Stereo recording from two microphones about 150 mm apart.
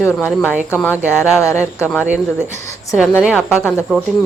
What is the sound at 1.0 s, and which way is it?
Speech, 10° right (ahead or behind).